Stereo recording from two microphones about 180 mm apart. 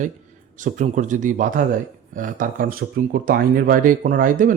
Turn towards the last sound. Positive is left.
turn(degrees=-50)  # may be behind; listen again after turning